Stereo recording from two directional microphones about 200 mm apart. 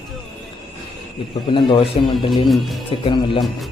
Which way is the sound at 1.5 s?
25° left (ahead or behind).